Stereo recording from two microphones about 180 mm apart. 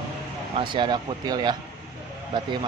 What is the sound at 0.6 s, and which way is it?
Speech, 25° right (ahead or behind).